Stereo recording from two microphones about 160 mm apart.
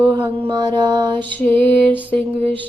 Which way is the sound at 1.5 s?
35° right (ahead or behind).